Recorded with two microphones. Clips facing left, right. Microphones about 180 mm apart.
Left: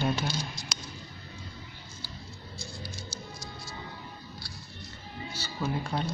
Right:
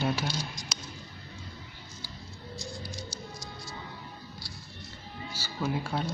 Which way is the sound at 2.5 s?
15° right (ahead or behind).